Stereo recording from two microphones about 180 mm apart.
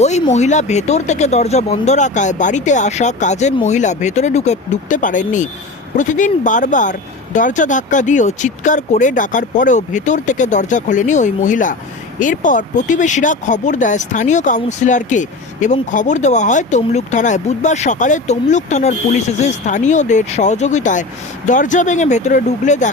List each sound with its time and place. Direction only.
0.0 s speech: 40° left (ahead or behind)